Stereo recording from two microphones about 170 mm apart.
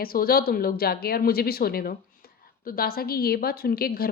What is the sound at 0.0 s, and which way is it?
A woman's voice, 60° left (ahead or behind).